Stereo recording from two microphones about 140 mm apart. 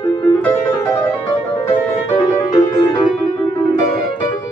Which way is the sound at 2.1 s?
35° left (ahead or behind).